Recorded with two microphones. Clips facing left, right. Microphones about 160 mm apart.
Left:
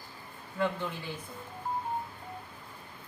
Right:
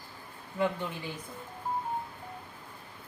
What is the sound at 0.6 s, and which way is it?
Speech, 20° right (ahead or behind).